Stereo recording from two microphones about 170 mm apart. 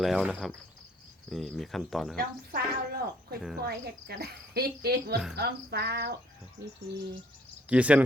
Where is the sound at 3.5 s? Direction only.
70° right (ahead or behind).